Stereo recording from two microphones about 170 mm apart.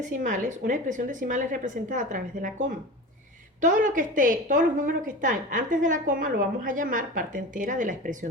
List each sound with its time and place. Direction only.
0.0 s a woman's voice: 50° right (ahead or behind)